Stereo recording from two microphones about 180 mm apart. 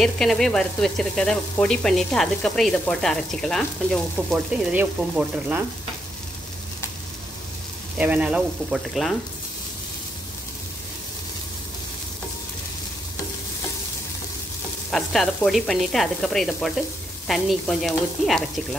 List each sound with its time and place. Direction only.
0.0 s sizzle: centre (ahead or behind)
4.7 s speech: 10° right (ahead or behind)
8.0 s sizzle: 5° right (ahead or behind)
14.9 s sizzle: centre (ahead or behind)